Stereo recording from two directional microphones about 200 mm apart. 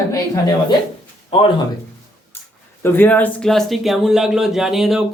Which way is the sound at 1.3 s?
25° left (ahead or behind).